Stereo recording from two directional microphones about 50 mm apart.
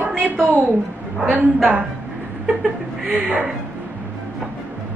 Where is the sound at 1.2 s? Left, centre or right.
Right.